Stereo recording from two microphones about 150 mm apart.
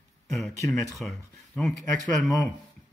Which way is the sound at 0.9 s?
Centre (ahead or behind).